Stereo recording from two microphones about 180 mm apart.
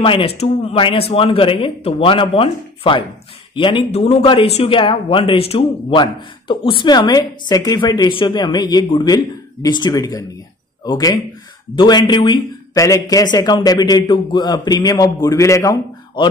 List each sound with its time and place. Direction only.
0.0 s a man's voice: 30° left (ahead or behind)